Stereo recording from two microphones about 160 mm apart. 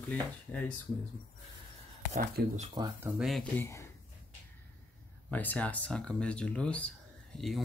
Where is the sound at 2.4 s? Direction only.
75° right (ahead or behind).